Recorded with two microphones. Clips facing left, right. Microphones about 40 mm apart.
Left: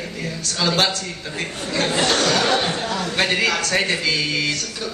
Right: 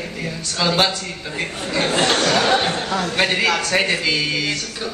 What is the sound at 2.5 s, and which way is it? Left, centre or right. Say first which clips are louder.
Speech: right 2 dB; right.